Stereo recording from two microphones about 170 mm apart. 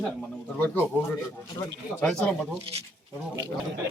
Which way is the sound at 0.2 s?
10° left (ahead or behind).